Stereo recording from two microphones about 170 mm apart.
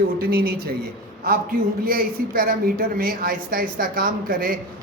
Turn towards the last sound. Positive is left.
turn(degrees=-55)  # may be behind; listen again after turning